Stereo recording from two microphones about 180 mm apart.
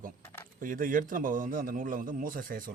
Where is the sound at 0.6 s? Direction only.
50° right (ahead or behind).